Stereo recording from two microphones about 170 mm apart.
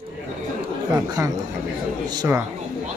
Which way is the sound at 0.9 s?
20° right (ahead or behind).